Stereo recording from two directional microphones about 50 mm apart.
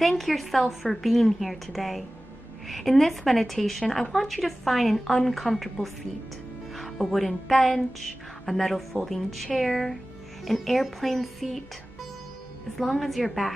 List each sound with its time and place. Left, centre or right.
0.2 s a woman's voice: centre